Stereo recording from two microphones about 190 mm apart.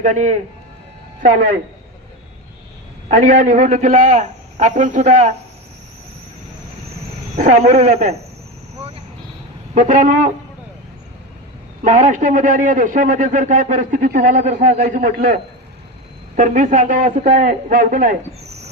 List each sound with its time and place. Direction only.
0.0 s a man's voice: 40° right (ahead or behind)
3.1 s a man's voice: 40° right (ahead or behind)
7.3 s a man's voice: 40° right (ahead or behind)
9.7 s a man's voice: 40° right (ahead or behind)
11.8 s a man's voice: 40° right (ahead or behind)